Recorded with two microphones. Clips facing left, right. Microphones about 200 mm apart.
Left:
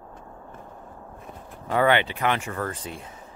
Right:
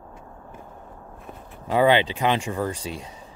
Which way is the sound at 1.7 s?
15° right (ahead or behind).